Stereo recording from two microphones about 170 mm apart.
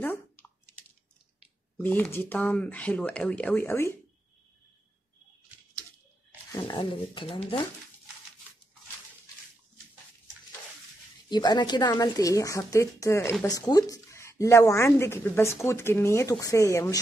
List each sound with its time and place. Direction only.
0.0 s chewing: 10° left (ahead or behind)
1.8 s a woman's voice: 10° left (ahead or behind)
6.5 s speech: 25° left (ahead or behind)
11.2 s a woman's voice: 25° left (ahead or behind)